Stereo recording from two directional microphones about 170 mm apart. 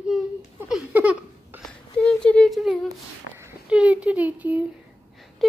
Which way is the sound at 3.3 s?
10° right (ahead or behind).